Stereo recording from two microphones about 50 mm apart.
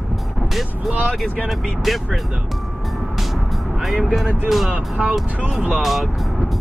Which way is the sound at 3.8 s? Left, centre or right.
Centre.